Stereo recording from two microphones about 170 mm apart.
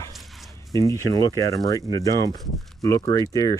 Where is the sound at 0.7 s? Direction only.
20° left (ahead or behind).